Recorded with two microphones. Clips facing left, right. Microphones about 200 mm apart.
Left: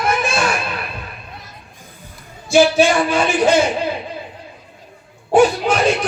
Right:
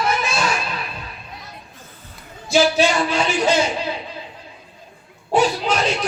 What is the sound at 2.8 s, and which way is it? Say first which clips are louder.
A man's voice: left 4 dB; 50° left (ahead or behind).